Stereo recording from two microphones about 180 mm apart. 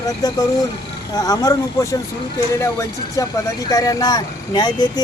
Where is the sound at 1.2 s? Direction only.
20° left (ahead or behind).